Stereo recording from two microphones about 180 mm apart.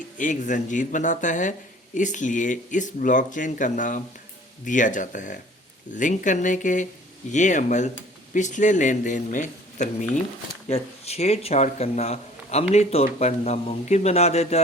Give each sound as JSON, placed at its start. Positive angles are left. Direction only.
{"t": 0.2, "sound": "speech", "side_deg": 45}